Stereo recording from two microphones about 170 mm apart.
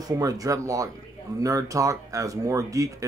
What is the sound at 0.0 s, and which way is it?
Speech, 20° right (ahead or behind).